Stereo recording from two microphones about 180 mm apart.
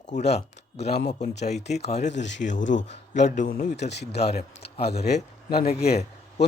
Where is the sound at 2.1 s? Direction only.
80° left.